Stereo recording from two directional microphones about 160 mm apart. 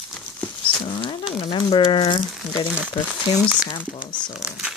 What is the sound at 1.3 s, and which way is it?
Speech, 35° left (ahead or behind).